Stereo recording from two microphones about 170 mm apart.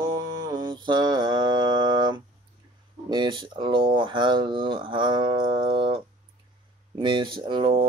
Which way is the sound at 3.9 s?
30° right (ahead or behind).